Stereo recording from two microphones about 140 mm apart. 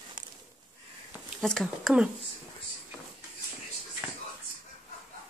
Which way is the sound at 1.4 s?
5° left (ahead or behind).